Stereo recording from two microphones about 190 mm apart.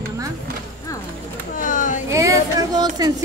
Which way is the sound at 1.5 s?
45° left (ahead or behind).